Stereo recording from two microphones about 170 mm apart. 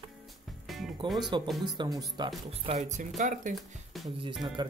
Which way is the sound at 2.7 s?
45° right (ahead or behind).